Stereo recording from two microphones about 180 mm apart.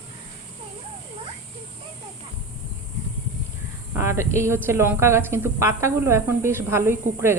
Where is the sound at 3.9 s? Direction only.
15° right (ahead or behind).